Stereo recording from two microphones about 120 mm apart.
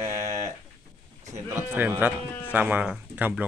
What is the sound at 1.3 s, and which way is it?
A man's voice, 20° right (ahead or behind).